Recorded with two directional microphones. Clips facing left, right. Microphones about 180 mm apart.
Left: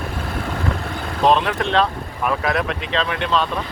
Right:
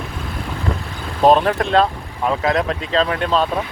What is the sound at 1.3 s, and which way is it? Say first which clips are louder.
Speech: right 4 dB; 40° right (ahead or behind).